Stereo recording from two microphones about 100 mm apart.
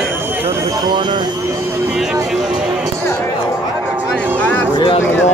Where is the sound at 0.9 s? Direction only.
50° right (ahead or behind).